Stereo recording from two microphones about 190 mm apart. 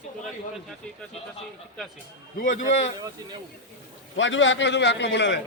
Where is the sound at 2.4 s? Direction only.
40° left (ahead or behind).